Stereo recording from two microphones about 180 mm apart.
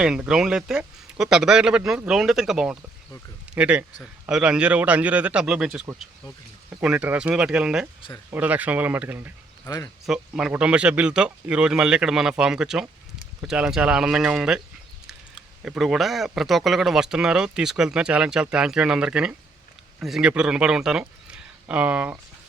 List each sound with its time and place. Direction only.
0.0 s speech: 5° right (ahead or behind)
9.6 s speech: 20° left (ahead or behind)
10.1 s speech: 5° right (ahead or behind)
15.6 s speech: 5° right (ahead or behind)